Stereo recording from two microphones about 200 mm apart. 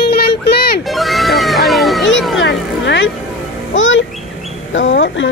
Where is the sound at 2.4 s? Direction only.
60° left (ahead or behind).